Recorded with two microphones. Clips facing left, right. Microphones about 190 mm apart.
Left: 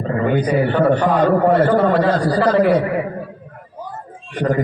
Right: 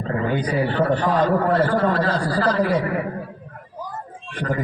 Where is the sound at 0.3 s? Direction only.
60° left (ahead or behind).